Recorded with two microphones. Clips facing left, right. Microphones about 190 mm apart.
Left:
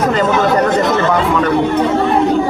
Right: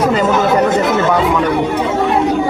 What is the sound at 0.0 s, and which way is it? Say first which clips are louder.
Chatter: even; 10° right (ahead or behind).